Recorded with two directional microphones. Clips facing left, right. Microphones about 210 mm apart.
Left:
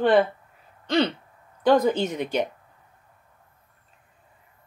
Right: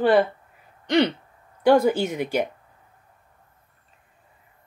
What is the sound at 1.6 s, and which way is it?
Speech, 10° right (ahead or behind).